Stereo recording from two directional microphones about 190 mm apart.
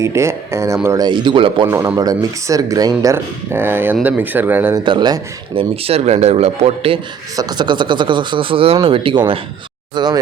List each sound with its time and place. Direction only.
0.0 s speech: 15° right (ahead or behind)
1.6 s speech: 15° right (ahead or behind)
4.8 s speech: 25° right (ahead or behind)
7.3 s speech: 20° right (ahead or behind)